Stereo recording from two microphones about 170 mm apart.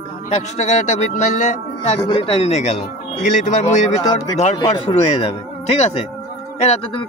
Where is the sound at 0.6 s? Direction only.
45° left (ahead or behind).